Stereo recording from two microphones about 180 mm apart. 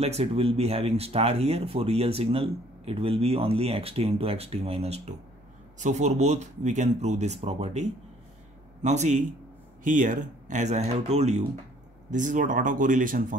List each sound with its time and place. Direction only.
0.0 s speech: 35° right (ahead or behind)